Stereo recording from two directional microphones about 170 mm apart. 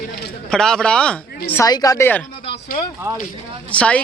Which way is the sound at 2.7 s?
60° left (ahead or behind).